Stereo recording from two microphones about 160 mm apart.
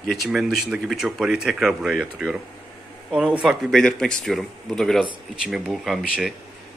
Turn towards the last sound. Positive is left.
turn(degrees=0)  # may be behind; listen again after turning